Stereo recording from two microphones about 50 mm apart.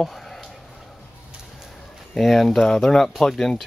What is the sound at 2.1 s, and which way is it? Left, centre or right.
Speech, centre.